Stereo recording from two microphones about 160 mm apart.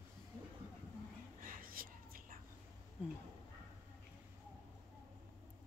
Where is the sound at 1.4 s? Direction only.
60° right (ahead or behind).